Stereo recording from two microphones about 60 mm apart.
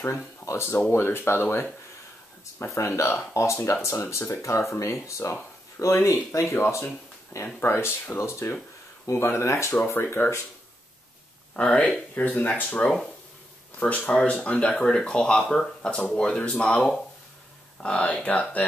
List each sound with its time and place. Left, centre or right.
0.5 s speech: left
2.6 s speech: left
6.5 s speech: left
7.3 s speech: left
7.6 s speech: left
9.8 s speech: left
11.5 s speech: left